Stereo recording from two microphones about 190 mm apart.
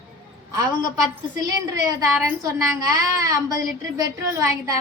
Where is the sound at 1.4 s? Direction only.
20° right (ahead or behind).